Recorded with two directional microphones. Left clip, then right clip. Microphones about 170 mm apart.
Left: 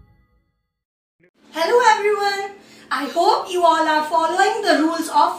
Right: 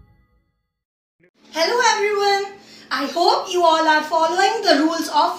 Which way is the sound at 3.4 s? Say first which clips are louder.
Right 1 dB; 15° right (ahead or behind).